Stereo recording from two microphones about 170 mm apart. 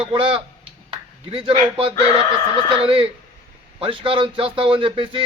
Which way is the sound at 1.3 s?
30° right (ahead or behind).